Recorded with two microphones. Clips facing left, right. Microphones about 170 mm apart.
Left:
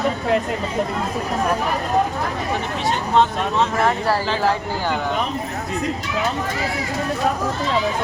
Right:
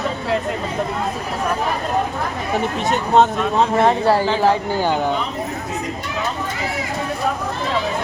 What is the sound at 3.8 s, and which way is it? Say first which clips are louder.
Speech: right 4 dB; 25° right (ahead or behind).